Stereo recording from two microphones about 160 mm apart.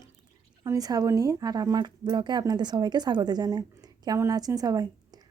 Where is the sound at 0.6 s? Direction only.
20° right (ahead or behind).